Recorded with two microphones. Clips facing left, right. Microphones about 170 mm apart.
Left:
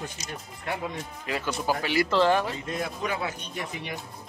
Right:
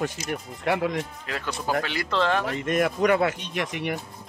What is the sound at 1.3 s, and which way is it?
Speech, 5° left (ahead or behind).